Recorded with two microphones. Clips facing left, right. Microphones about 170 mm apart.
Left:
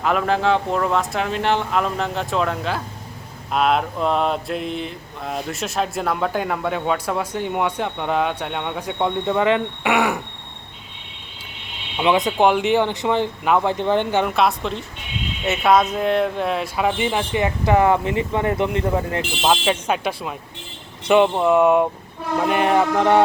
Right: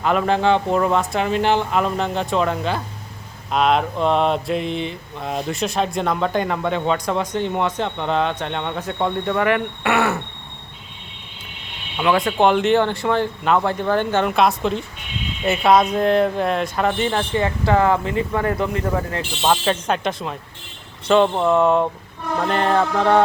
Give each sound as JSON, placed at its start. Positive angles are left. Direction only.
{"t": 0.0, "sound": "mantra", "side_deg": 0}
{"t": 11.9, "sound": "speech", "side_deg": 20}
{"t": 14.3, "sound": "mantra", "side_deg": 0}
{"t": 15.4, "sound": "speech", "side_deg": 0}
{"t": 19.4, "sound": "speech", "side_deg": 10}
{"t": 21.3, "sound": "speech", "side_deg": 5}